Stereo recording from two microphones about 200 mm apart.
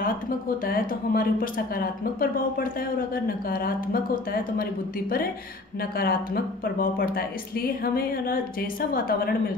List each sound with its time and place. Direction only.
0.7 s speech: 45° left (ahead or behind)
5.8 s speech: 50° left (ahead or behind)